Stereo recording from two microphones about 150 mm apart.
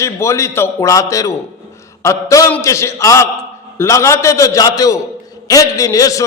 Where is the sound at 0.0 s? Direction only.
20° left (ahead or behind).